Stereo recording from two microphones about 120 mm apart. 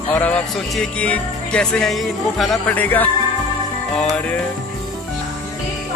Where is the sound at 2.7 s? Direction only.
15° left (ahead or behind).